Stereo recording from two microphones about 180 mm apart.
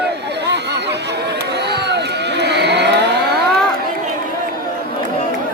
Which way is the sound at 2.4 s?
70° right (ahead or behind).